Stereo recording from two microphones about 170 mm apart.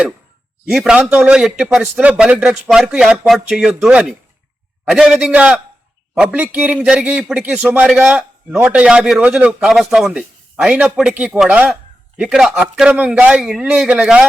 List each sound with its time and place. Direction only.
0.6 s a man's voice: 5° right (ahead or behind)